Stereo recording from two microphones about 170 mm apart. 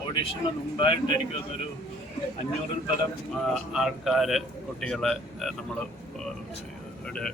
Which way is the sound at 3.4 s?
Centre (ahead or behind).